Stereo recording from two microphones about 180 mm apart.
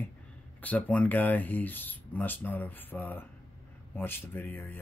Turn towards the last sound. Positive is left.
turn(degrees=10)  # may be behind; listen again after turning